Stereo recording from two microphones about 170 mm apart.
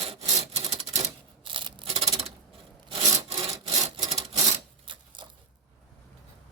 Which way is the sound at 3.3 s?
35° right (ahead or behind).